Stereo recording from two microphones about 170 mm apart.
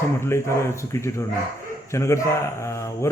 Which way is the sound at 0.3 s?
15° left (ahead or behind).